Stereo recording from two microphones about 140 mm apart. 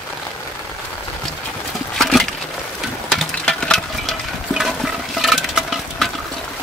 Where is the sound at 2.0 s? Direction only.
Centre (ahead or behind).